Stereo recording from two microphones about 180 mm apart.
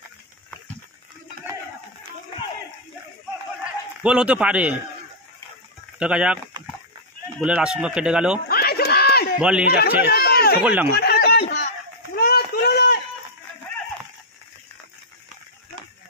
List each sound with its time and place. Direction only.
4.0 s a man's voice: 5° right (ahead or behind)
5.9 s speech: 5° right (ahead or behind)
8.5 s a sound: 60° left (ahead or behind)
9.4 s speech: 5° right (ahead or behind)
9.7 s speech: 65° left (ahead or behind)
10.6 s a man's voice: 10° right (ahead or behind)
10.9 s snicker: 60° left (ahead or behind)
12.2 s run: 55° left (ahead or behind)